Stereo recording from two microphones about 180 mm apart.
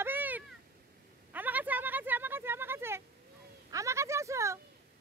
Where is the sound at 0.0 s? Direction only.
10° right (ahead or behind).